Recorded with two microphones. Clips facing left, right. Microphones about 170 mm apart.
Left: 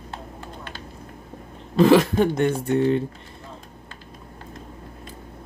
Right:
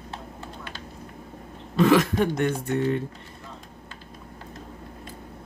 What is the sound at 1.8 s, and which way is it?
Speech, 30° left (ahead or behind).